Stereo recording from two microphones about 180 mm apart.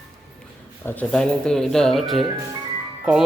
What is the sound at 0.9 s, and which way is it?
Speech, 5° left (ahead or behind).